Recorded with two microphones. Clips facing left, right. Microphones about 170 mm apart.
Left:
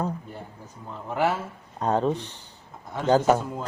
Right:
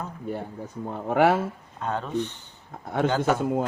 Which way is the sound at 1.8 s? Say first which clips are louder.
Left 4 dB; 35° left (ahead or behind).